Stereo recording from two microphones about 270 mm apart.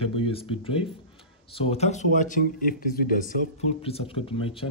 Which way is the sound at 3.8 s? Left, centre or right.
Left.